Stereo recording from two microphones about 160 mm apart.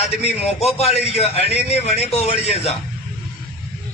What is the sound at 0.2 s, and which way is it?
A man's voice, 40° left (ahead or behind).